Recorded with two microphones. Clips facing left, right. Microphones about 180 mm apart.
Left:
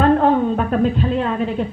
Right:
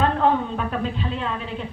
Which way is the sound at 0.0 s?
50° left (ahead or behind).